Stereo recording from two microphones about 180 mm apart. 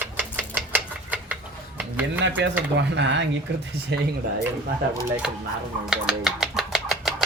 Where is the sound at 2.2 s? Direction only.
90° right.